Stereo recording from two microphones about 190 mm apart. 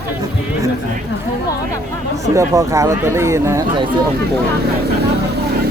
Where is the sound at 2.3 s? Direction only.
15° right (ahead or behind).